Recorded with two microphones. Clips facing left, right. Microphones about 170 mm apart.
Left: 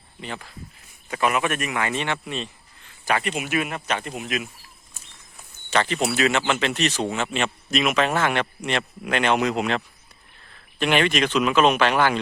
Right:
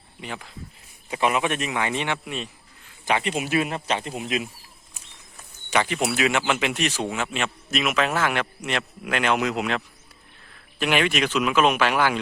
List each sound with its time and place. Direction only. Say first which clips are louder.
0.2 s a man's voice: left 1 dB; 10° right (ahead or behind)
3.1 s a man's voice: even; 20° right (ahead or behind)
3.4 s a man's voice: right 2 dB; 30° right (ahead or behind)
5.7 s a man's voice: left 1 dB; 10° right (ahead or behind)